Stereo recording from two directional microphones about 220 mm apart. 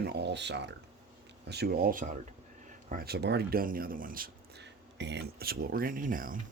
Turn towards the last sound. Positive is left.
turn(degrees=-40)  # may be behind; listen again after turning